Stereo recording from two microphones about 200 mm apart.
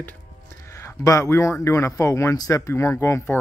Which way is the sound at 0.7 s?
15° left (ahead or behind).